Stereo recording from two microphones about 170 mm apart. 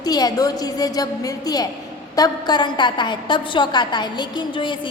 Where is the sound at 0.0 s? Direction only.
25° left (ahead or behind).